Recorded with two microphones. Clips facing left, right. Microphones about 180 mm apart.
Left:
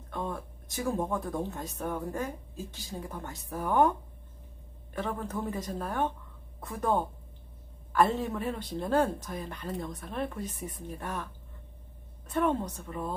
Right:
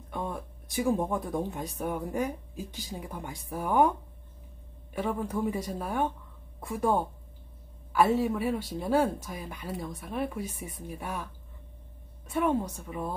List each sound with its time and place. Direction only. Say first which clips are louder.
0.1 s speech: right 1 dB; 15° right (ahead or behind)
4.9 s speech: right 3 dB; 10° right (ahead or behind)
12.3 s speech: right 1 dB; 10° right (ahead or behind)